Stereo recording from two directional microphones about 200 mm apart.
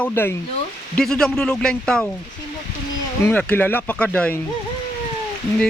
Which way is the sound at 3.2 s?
5° left (ahead or behind).